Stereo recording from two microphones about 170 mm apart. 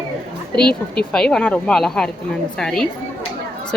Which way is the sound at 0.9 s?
5° left (ahead or behind).